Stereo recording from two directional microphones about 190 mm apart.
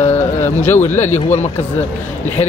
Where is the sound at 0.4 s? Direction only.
10° left (ahead or behind).